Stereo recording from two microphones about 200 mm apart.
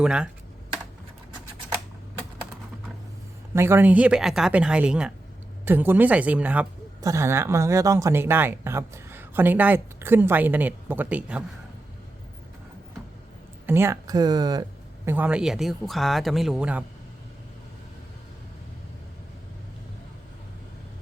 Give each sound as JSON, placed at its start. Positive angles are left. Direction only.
{"t": 0.0, "sound": "speech", "side_deg": -5}
{"t": 3.5, "sound": "speech", "side_deg": -10}
{"t": 13.7, "sound": "speech", "side_deg": -10}